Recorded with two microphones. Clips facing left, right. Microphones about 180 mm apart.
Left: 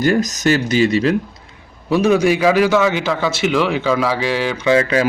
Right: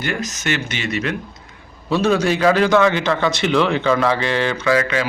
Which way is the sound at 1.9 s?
15° left (ahead or behind).